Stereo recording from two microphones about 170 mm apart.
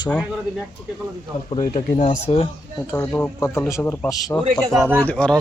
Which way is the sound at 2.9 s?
15° left (ahead or behind).